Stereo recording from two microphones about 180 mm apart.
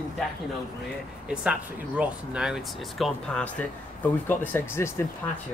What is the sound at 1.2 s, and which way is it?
Speech, 5° right (ahead or behind).